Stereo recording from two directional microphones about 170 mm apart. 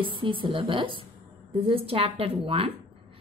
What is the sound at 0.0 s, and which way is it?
A woman's voice, 30° right (ahead or behind).